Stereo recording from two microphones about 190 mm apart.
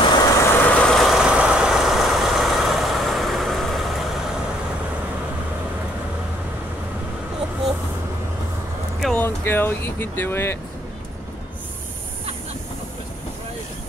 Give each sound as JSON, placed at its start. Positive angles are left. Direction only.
{"t": 0.2, "sound": "vehicle", "side_deg": 15}
{"t": 9.0, "sound": "vehicle", "side_deg": 10}